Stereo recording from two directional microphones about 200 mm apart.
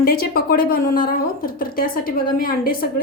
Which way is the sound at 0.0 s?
50° left (ahead or behind).